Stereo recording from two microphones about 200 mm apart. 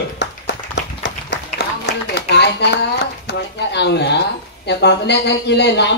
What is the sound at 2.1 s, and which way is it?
Speech, 55° left (ahead or behind).